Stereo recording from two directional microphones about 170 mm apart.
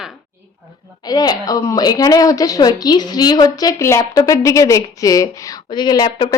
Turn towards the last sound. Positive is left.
turn(degrees=30)  # may be behind; listen again after turning